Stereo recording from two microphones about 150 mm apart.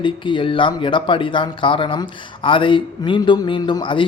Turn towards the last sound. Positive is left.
turn(degrees=30)  # may be behind; listen again after turning